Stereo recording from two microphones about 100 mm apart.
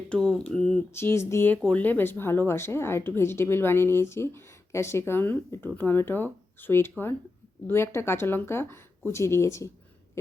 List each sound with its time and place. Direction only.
0.1 s speech: 10° left (ahead or behind)
0.9 s speech: 25° left (ahead or behind)
1.6 s speech: 15° left (ahead or behind)